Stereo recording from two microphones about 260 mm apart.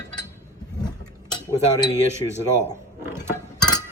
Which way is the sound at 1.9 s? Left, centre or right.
Centre.